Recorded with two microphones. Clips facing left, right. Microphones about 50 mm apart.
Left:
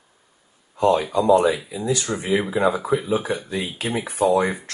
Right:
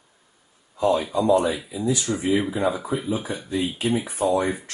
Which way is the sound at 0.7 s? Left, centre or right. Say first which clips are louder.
Left 3 dB; left.